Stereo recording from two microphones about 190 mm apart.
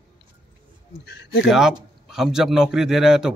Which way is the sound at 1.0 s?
60° left (ahead or behind).